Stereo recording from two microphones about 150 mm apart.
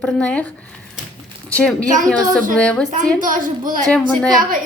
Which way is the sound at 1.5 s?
10° left (ahead or behind).